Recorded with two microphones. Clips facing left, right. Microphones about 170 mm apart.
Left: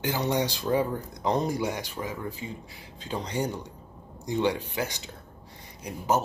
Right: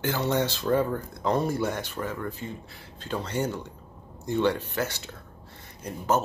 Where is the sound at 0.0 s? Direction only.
15° left (ahead or behind).